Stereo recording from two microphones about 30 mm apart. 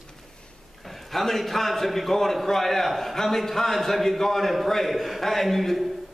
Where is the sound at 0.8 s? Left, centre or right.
Centre.